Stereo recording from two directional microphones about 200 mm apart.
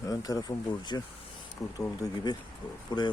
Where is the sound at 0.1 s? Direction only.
15° left (ahead or behind).